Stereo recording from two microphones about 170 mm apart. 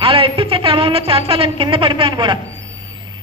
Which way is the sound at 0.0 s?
30° right (ahead or behind).